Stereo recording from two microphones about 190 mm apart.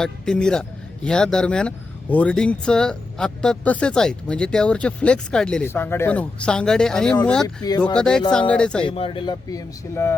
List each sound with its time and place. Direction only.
0.0 s speech: 5° left (ahead or behind)
7.4 s speech: 20° left (ahead or behind)
7.9 s speech: 5° left (ahead or behind)
8.9 s speech: 25° left (ahead or behind)